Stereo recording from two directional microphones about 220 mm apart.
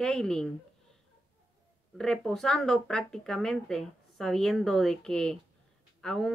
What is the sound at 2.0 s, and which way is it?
Speech, centre (ahead or behind).